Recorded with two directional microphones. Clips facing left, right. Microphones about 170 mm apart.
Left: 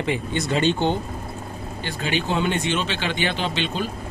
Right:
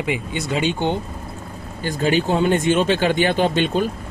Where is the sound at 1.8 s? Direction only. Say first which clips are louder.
Right 7 dB; 40° right (ahead or behind).